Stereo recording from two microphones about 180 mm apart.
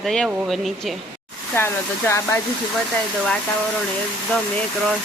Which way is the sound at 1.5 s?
15° left (ahead or behind).